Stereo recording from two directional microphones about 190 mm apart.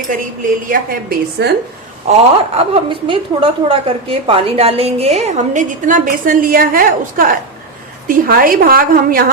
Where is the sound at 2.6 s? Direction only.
30° right (ahead or behind).